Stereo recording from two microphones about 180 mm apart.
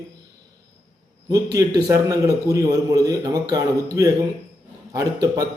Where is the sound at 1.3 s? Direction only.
20° right (ahead or behind).